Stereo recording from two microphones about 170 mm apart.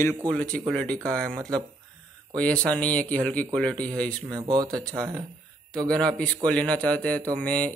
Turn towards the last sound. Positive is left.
turn(degrees=5)  # may be behind; listen again after turning